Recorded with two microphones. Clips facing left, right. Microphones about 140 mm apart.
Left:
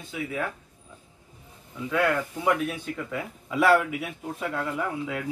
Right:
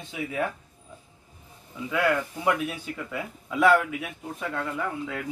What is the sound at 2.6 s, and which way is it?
A woman's voice, 5° right (ahead or behind).